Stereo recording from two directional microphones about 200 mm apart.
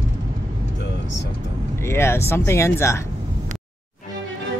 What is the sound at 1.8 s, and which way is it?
Speech, 15° left (ahead or behind).